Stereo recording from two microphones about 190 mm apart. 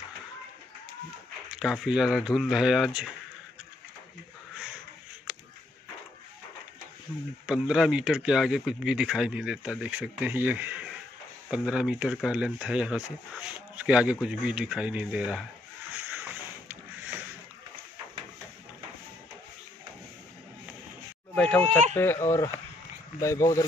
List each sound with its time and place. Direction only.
1.5 s a man's voice: centre (ahead or behind)
7.4 s a man's voice: 5° right (ahead or behind)
13.4 s a sound: 5° right (ahead or behind)
14.1 s a man's voice: 5° right (ahead or behind)
15.9 s a sound: 10° right (ahead or behind)
21.4 s speech: 5° left (ahead or behind)